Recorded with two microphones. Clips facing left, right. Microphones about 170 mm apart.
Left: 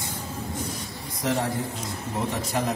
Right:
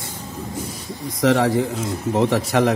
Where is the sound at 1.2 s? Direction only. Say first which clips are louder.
Right 9 dB; 90° right.